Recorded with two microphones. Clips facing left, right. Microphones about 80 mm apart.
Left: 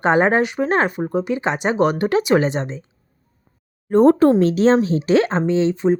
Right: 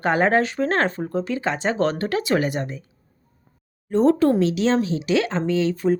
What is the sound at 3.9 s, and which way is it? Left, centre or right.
Speech, left.